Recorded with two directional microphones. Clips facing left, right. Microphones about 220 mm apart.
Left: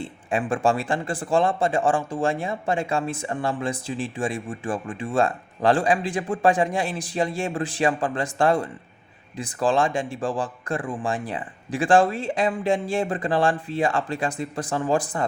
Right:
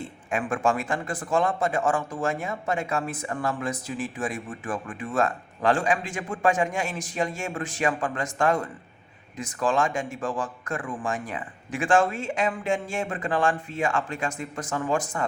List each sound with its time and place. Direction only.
0.0 s a man's voice: 30° left (ahead or behind)